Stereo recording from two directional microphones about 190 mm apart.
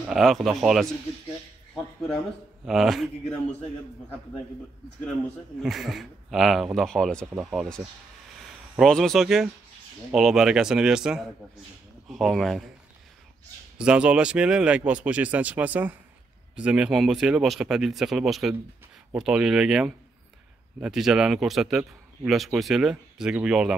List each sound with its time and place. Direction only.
0.1 s a man's voice: centre (ahead or behind)
1.8 s a sound: 5° left (ahead or behind)
2.6 s a man's voice: centre (ahead or behind)
5.6 s a man's voice: centre (ahead or behind)
13.7 s a man's voice: 5° right (ahead or behind)